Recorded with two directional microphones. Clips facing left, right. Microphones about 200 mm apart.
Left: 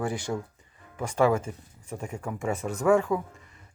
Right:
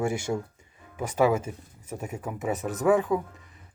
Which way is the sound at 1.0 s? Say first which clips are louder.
Even; 5° right (ahead or behind).